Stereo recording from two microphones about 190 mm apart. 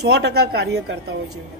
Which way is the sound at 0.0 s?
60° right (ahead or behind).